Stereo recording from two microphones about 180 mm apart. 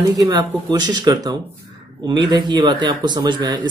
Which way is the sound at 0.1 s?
20° right (ahead or behind).